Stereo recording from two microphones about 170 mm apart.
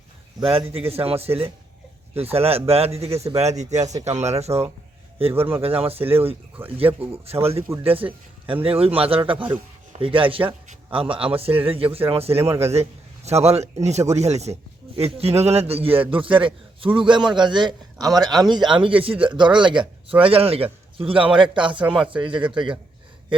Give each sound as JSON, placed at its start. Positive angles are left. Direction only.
{"t": 0.5, "sound": "a man's voice", "side_deg": -35}
{"t": 12.4, "sound": "speech", "side_deg": -15}
{"t": 12.7, "sound": "a man's voice", "side_deg": -40}
{"t": 21.9, "sound": "speech", "side_deg": -5}
{"t": 22.2, "sound": "a man's voice", "side_deg": -30}